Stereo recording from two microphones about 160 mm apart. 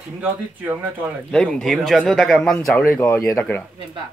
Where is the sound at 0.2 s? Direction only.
10° right (ahead or behind).